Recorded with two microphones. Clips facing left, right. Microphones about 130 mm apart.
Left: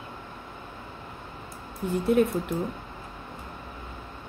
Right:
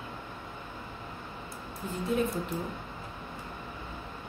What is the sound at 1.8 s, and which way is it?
Speech, 70° left (ahead or behind).